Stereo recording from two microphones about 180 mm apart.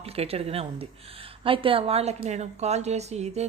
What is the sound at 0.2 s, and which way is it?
A woman's voice, 35° right (ahead or behind).